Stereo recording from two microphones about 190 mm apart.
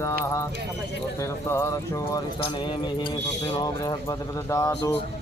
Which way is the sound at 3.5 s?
20° left (ahead or behind).